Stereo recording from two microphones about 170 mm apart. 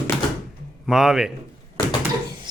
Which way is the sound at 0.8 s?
5° right (ahead or behind).